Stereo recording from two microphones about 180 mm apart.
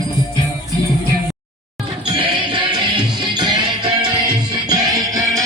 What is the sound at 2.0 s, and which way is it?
Music, 30° right (ahead or behind).